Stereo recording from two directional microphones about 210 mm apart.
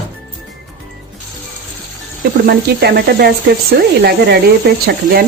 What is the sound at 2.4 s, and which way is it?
Speech, 50° right (ahead or behind).